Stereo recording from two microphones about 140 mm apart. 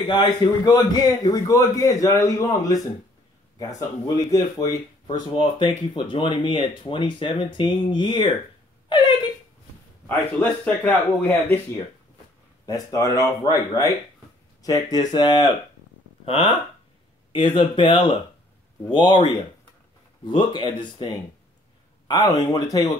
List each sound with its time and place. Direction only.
0.0 s a man's voice: 35° left (ahead or behind)
4.0 s speech: 25° left (ahead or behind)
8.8 s a sound: 30° left (ahead or behind)
10.0 s a man's voice: 10° left (ahead or behind)
12.6 s a man's voice: 25° left (ahead or behind)